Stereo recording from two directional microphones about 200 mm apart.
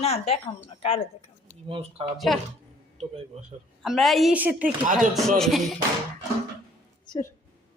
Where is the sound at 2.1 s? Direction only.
Centre (ahead or behind).